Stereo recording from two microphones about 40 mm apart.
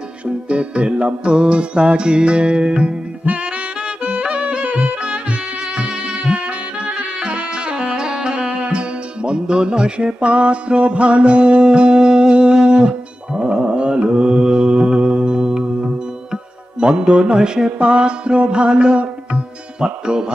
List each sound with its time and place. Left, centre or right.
0.5 s music: right
3.3 s music: right
3.8 s music: right
4.6 s music: right